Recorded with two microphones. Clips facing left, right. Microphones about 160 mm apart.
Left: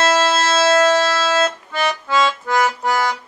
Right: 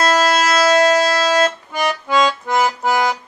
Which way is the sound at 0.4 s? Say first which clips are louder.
Right 1 dB; 10° right (ahead or behind).